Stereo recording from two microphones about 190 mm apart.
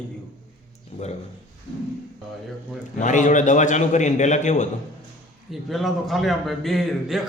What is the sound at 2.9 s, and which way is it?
A man's voice, 40° left (ahead or behind).